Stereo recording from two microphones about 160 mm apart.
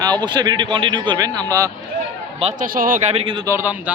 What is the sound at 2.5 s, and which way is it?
Speech, 60° right (ahead or behind).